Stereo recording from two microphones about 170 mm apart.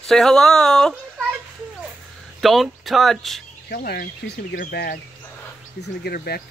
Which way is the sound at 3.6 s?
65° left (ahead or behind).